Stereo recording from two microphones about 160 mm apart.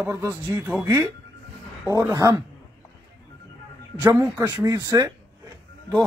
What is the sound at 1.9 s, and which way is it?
Speech, 20° right (ahead or behind).